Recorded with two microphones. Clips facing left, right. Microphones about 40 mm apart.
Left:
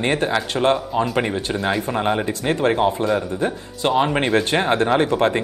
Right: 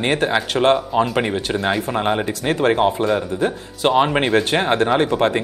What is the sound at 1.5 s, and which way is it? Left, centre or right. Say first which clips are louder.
Speech: right 1 dB; centre.